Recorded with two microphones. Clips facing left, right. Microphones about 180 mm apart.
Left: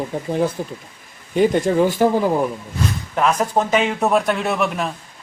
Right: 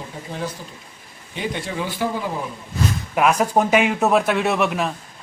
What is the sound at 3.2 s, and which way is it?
Speech, 10° right (ahead or behind).